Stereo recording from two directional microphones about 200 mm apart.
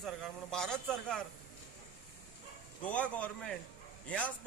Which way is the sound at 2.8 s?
5° left (ahead or behind).